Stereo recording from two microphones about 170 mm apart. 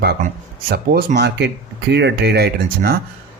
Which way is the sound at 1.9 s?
85° right.